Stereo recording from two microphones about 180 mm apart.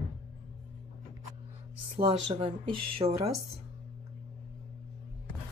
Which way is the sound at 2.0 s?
30° right (ahead or behind).